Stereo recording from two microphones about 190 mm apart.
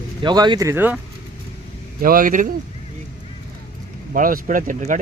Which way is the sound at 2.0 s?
45° right (ahead or behind).